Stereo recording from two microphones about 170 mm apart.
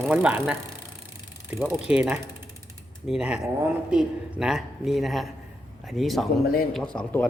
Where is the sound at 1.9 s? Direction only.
5° right (ahead or behind).